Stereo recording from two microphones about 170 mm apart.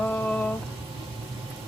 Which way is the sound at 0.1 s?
10° left (ahead or behind).